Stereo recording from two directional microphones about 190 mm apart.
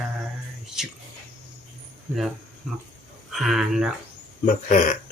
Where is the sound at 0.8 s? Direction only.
Centre (ahead or behind).